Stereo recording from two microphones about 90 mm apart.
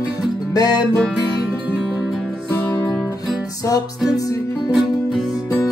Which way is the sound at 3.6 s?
40° left (ahead or behind).